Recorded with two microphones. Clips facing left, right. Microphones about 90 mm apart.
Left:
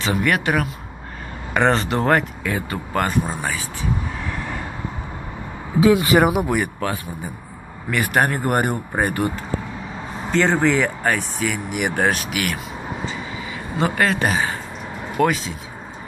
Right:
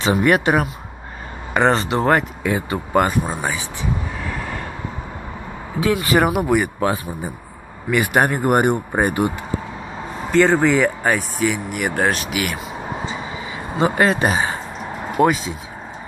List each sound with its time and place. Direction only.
0.0 s speech: 25° right (ahead or behind)
1.5 s speech: 5° right (ahead or behind)
2.4 s speech: 15° right (ahead or behind)
4.2 s vehicle: centre (ahead or behind)
5.8 s speech: 15° left (ahead or behind)
6.4 s speech: 10° right (ahead or behind)
7.9 s speech: 10° right (ahead or behind)
13.7 s speech: 20° right (ahead or behind)